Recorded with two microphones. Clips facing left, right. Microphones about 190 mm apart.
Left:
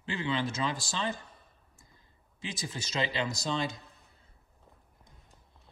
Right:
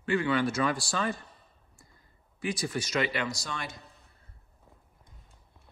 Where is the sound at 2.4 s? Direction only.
20° left (ahead or behind).